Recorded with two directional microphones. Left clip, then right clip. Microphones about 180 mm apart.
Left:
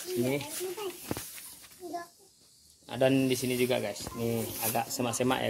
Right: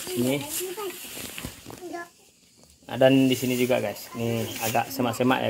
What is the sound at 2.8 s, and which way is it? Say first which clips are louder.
Speech: right 7 dB; 40° right (ahead or behind).